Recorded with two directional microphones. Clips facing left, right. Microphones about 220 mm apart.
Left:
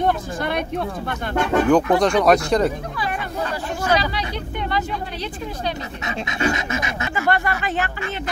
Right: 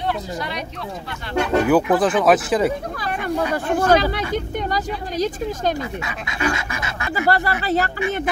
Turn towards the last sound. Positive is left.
turn(degrees=-35)  # may be behind; listen again after turning